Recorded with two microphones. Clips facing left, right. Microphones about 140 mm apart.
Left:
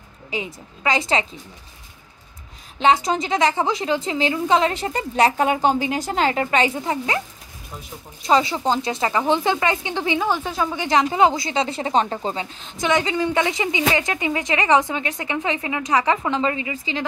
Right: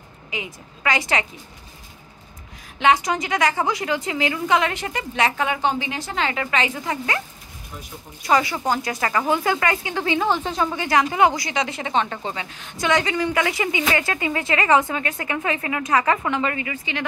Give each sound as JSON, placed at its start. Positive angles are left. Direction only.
{"t": 0.8, "sound": "speech", "side_deg": 25}
{"t": 2.8, "sound": "speech", "side_deg": 25}
{"t": 8.3, "sound": "speech", "side_deg": 25}
{"t": 10.8, "sound": "speech", "side_deg": 20}
{"t": 16.3, "sound": "speech", "side_deg": 25}